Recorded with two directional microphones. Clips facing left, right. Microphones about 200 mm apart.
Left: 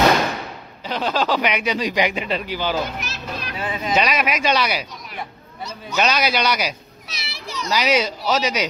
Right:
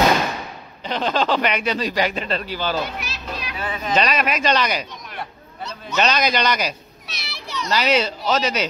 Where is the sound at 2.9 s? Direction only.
45° left (ahead or behind).